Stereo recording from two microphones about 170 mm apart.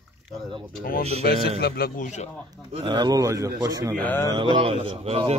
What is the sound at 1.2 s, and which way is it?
Speech, 60° left (ahead or behind).